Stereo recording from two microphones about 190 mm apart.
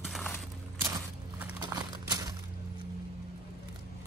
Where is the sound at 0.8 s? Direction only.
10° right (ahead or behind).